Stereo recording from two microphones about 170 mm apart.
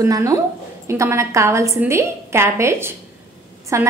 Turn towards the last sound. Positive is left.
turn(degrees=-15)  # may be behind; listen again after turning